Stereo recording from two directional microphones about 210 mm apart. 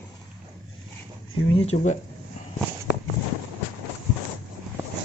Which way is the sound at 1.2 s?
70° left (ahead or behind).